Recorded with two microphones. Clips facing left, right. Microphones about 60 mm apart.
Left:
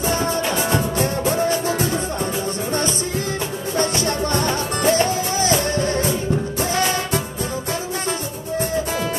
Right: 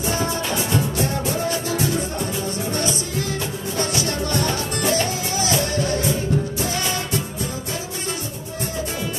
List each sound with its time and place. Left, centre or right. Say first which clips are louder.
0.2 s music: left 3 dB; left
3.7 s music: left 3 dB; left